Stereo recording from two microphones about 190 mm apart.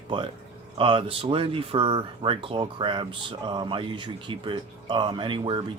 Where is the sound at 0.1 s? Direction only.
25° right (ahead or behind).